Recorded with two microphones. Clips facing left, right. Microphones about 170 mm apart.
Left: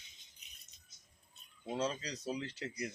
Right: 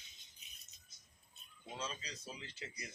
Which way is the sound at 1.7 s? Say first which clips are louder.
Left 9 dB; 70° left (ahead or behind).